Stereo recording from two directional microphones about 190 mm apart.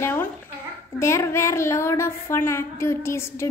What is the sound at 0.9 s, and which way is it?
Speech, 15° left (ahead or behind).